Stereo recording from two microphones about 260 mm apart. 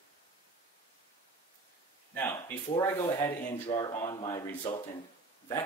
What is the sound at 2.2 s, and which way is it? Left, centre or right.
Speech, centre.